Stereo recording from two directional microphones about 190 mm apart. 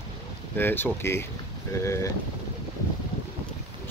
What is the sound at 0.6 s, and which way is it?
Speech, 10° left (ahead or behind).